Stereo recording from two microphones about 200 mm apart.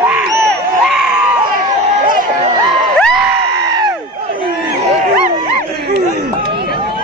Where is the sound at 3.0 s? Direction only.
Centre (ahead or behind).